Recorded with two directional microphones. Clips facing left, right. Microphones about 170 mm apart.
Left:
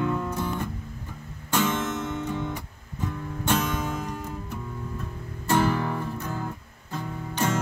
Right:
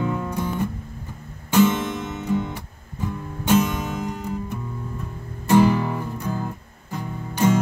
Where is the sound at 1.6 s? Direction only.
10° right (ahead or behind).